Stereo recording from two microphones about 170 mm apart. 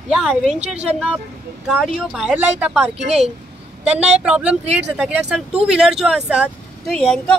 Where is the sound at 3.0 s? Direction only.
40° right (ahead or behind).